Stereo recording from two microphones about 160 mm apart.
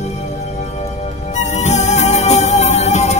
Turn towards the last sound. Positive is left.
turn(degrees=45)  # may be behind; listen again after turning